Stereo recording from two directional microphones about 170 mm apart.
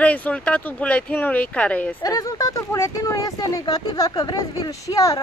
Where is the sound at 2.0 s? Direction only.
20° left (ahead or behind).